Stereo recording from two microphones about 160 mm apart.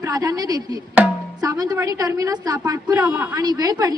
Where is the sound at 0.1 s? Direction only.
20° right (ahead or behind).